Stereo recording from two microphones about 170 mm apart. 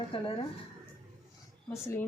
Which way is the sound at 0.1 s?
30° left (ahead or behind).